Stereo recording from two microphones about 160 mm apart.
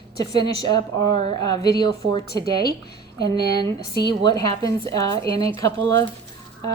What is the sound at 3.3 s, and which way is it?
A woman's voice, 25° left (ahead or behind).